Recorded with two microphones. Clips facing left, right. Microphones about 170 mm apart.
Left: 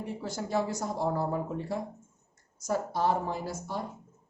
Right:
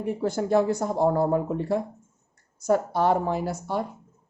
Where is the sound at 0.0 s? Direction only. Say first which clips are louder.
Right 9 dB; 55° right (ahead or behind).